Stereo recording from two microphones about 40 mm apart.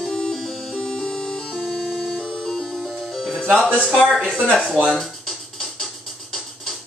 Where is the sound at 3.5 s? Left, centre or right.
Right.